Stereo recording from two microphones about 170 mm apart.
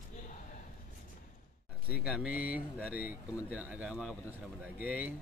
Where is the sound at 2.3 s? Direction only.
60° left (ahead or behind).